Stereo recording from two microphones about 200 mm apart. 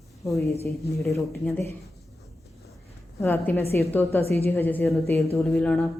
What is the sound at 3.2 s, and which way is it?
Speech, 10° left (ahead or behind).